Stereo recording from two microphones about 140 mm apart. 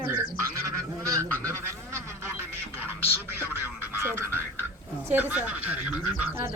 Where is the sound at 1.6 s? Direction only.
20° right (ahead or behind).